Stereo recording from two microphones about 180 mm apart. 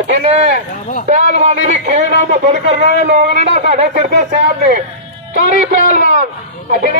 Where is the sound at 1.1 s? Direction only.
45° right (ahead or behind).